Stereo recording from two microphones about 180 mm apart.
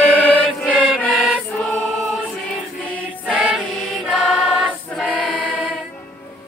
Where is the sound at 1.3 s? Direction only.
5° left (ahead or behind).